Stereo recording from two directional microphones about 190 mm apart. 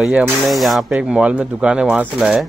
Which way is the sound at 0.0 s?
Centre (ahead or behind).